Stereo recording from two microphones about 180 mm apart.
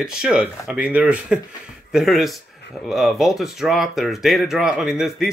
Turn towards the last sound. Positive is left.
turn(degrees=0)  # may be behind; listen again after turning